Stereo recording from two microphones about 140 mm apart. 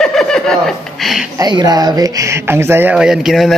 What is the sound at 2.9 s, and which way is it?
Speech, 5° right (ahead or behind).